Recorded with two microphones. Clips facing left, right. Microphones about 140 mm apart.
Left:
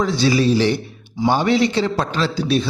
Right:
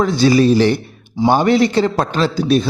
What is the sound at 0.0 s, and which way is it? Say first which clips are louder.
A man's voice: right 5 dB; 50° right (ahead or behind).